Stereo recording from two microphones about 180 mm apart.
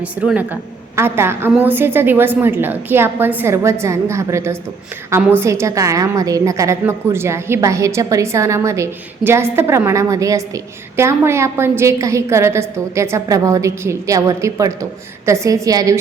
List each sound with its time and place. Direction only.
0.0 s a woman's voice: 5° right (ahead or behind)